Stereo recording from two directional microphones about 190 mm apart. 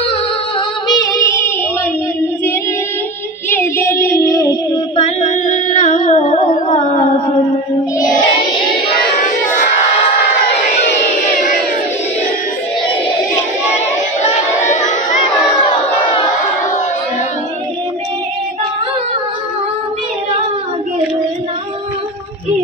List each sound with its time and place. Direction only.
0.8 s music: 20° left (ahead or behind)
3.4 s child singing: 15° left (ahead or behind)
4.9 s music: 35° left (ahead or behind)
14.6 s crowd: 40° left (ahead or behind)